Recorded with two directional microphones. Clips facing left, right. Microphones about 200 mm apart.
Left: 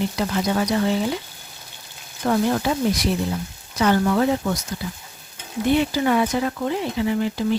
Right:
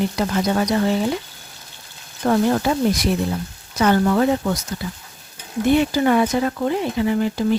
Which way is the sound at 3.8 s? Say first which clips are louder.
Right 2 dB; 50° right (ahead or behind).